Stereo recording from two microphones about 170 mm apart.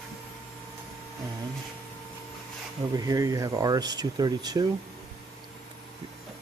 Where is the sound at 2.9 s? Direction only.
20° right (ahead or behind).